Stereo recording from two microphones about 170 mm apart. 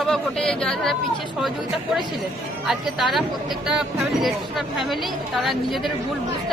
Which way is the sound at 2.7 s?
Centre (ahead or behind).